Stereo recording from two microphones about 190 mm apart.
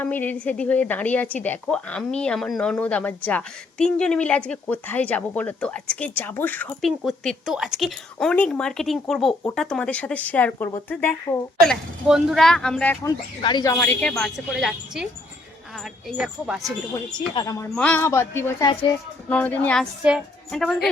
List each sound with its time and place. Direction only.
0.0 s a woman's voice: 10° left (ahead or behind)
13.1 s speech: 25° left (ahead or behind)
13.7 s speech: 5° left (ahead or behind)
16.0 s speech: 5° right (ahead or behind)
17.2 s a woman's voice: 20° left (ahead or behind); by 19.9 s 5° left (ahead or behind)
20.0 s speech: 5° right (ahead or behind)